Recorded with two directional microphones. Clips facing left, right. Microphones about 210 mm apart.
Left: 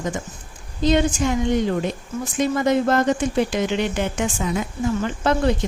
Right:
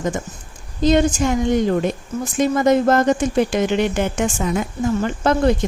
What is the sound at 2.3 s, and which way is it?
A woman's voice, 45° right (ahead or behind).